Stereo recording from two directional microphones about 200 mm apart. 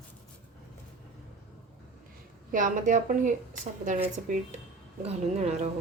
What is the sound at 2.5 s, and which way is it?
Speech, 40° right (ahead or behind).